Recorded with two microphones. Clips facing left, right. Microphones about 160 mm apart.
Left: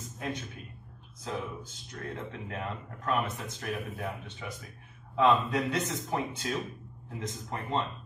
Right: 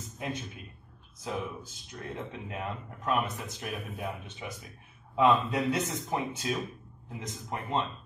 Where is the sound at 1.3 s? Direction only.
15° right (ahead or behind).